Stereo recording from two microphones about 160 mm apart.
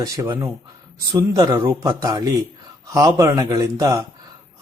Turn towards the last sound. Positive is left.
turn(degrees=-20)  # may be behind; listen again after turning